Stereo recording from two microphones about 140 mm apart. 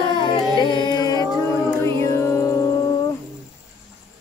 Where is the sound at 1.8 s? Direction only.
20° left (ahead or behind).